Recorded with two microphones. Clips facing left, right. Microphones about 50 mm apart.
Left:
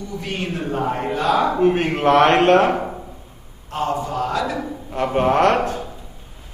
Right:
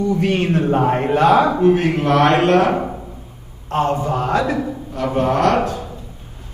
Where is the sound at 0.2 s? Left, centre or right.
Right.